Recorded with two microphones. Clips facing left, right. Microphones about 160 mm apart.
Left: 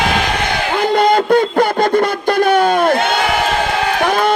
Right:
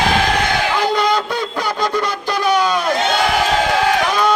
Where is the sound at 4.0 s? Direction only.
55° left (ahead or behind).